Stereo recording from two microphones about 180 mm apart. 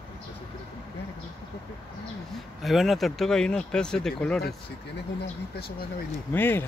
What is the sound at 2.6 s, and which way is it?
Speech, centre (ahead or behind).